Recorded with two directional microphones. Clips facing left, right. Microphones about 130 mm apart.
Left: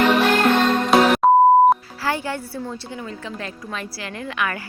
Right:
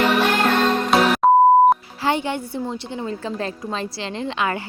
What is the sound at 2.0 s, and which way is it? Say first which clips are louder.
A woman's voice: right 3 dB; 20° right (ahead or behind).